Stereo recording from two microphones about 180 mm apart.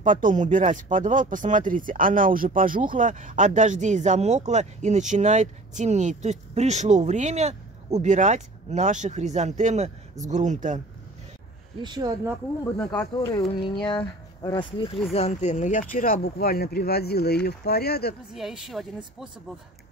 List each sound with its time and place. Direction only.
0.0 s speech: 45° right (ahead or behind)
11.8 s speech: 25° right (ahead or behind)
12.9 s speech: 25° left (ahead or behind)
15.1 s speech: 40° left (ahead or behind); by 18.1 s 60° left (ahead or behind)
18.3 s speech: centre (ahead or behind)